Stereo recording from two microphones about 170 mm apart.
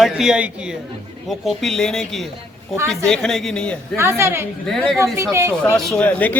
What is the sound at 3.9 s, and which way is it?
Speech, 15° right (ahead or behind).